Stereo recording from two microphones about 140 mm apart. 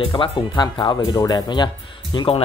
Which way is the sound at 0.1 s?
30° left (ahead or behind).